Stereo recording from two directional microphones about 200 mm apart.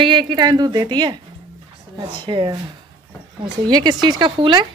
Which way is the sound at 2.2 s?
25° right (ahead or behind).